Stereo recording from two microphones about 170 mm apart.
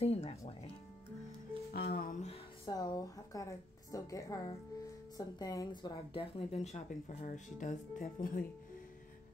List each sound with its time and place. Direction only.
0.0 s speech: 35° left (ahead or behind)
1.7 s music: 60° left (ahead or behind)
2.2 s a woman's voice: 25° left (ahead or behind); by 8.5 s 55° left (ahead or behind)